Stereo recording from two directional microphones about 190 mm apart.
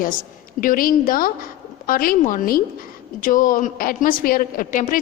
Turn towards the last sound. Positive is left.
turn(degrees=45)  # may be behind; listen again after turning